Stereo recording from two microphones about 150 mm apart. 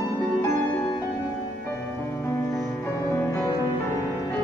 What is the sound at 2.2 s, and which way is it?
Music, 20° left (ahead or behind).